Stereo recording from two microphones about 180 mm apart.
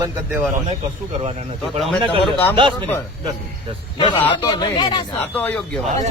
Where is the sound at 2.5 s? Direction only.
30° right (ahead or behind).